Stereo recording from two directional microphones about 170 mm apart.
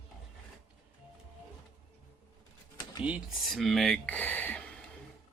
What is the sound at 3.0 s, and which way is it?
Speech, 5° right (ahead or behind).